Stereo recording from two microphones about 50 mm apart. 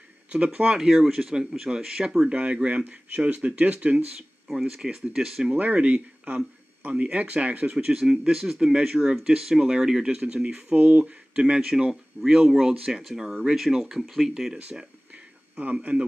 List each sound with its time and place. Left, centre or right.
0.7 s speech: centre; by 4.0 s right
4.5 s speech: centre
5.5 s speech: right
11.3 s speech: centre
11.9 s speech: centre
12.4 s speech: centre
15.5 s speech: right